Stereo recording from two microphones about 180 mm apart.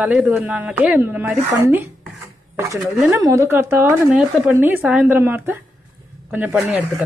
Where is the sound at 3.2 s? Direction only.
15° right (ahead or behind).